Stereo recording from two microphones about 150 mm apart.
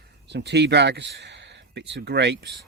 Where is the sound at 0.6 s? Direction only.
90° right.